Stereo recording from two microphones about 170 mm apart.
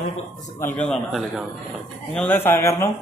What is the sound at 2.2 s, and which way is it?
Speech, 10° left (ahead or behind).